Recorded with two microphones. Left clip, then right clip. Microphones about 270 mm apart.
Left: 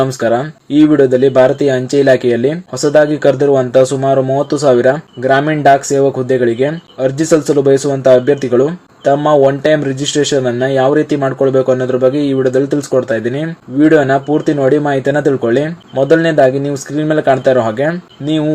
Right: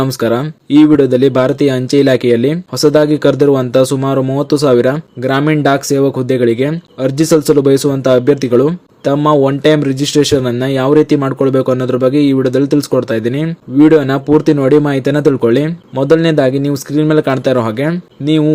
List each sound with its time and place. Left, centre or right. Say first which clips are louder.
0.0 s speech: left 1 dB; right
14.6 s speech: right 1 dB; right